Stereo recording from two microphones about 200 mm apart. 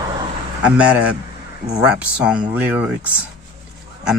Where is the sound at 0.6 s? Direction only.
5° right (ahead or behind).